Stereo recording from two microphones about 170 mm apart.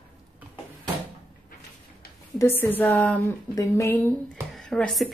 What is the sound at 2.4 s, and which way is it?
Speech, 10° left (ahead or behind).